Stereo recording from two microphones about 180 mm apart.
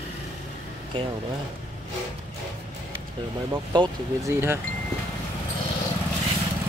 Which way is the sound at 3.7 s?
25° right (ahead or behind).